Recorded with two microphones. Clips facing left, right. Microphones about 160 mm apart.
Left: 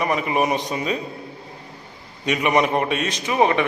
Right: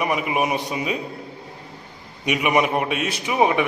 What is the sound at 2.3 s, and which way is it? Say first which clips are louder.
A man's voice: left 1 dB; 10° right (ahead or behind).